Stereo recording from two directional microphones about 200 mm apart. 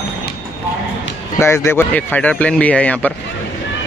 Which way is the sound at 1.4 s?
10° left (ahead or behind).